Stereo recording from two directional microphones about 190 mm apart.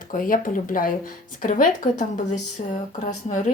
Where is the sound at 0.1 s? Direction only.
45° left (ahead or behind).